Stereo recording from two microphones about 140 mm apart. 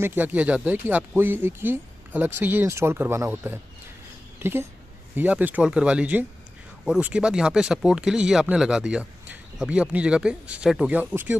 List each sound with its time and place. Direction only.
0.0 s speech: 15° right (ahead or behind)